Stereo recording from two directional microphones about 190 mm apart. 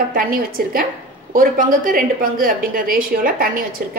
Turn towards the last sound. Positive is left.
turn(degrees=-50)  # may be behind; listen again after turning